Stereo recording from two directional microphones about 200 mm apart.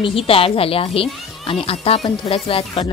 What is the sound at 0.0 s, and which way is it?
Speech, 30° left (ahead or behind).